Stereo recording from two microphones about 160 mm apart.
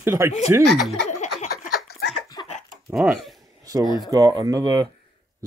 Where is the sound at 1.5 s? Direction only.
70° left (ahead or behind).